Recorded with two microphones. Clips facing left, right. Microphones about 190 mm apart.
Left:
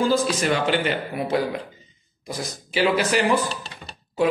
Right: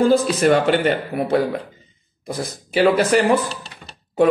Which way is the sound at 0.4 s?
55° right (ahead or behind).